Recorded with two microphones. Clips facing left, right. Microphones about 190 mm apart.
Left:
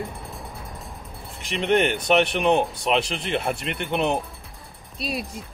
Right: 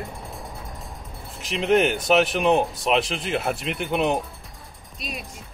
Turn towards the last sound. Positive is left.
turn(degrees=35)  # may be behind; listen again after turning